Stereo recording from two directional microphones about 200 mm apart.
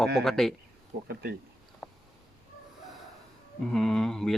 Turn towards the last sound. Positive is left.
turn(degrees=0)  # may be behind; listen again after turning